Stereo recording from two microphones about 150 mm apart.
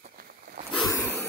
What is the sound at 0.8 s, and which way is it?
Dog, 20° left (ahead or behind).